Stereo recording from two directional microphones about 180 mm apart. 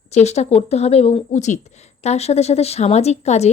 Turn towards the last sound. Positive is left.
turn(degrees=35)  # may be behind; listen again after turning